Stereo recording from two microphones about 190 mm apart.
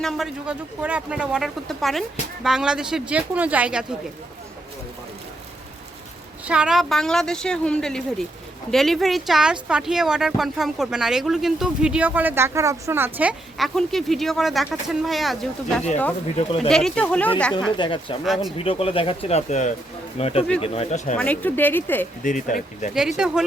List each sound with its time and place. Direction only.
0.0 s speech: centre (ahead or behind)
6.4 s speech: 5° right (ahead or behind)
17.7 s speech: 25° left (ahead or behind)
21.2 s speech: 10° left (ahead or behind)
22.2 s speech: 40° left (ahead or behind)
23.0 s speech: 5° right (ahead or behind)